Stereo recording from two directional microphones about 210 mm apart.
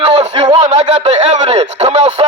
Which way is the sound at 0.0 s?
30° right (ahead or behind).